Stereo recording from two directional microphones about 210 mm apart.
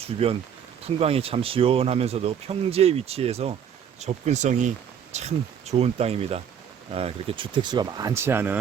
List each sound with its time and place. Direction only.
0.0 s speech: 25° right (ahead or behind); by 8.5 s 10° right (ahead or behind)